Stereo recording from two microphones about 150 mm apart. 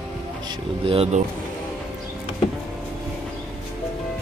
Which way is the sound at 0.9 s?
45° right (ahead or behind).